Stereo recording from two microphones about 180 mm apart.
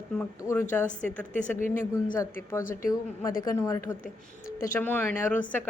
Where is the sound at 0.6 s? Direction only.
45° left (ahead or behind).